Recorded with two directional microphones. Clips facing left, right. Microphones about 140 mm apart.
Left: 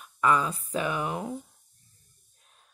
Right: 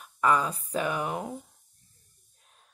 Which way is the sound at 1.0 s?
30° right (ahead or behind).